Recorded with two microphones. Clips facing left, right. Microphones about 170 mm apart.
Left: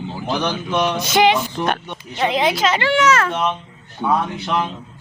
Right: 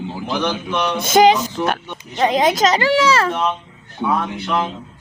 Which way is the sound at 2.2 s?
40° right (ahead or behind).